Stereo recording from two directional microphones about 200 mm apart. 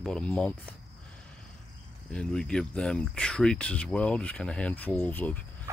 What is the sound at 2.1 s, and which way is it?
Speech, 5° left (ahead or behind).